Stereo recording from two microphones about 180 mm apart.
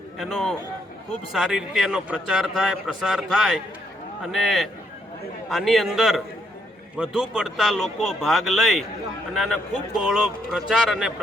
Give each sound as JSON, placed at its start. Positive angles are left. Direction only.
{"t": 0.2, "sound": "a man's voice", "side_deg": 0}